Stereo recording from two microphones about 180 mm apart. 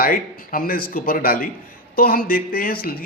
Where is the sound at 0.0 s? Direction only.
55° left (ahead or behind).